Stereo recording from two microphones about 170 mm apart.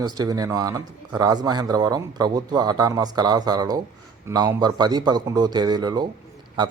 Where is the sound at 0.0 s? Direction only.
25° right (ahead or behind).